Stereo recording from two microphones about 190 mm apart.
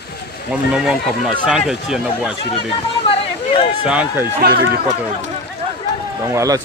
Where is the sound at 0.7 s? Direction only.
5° right (ahead or behind).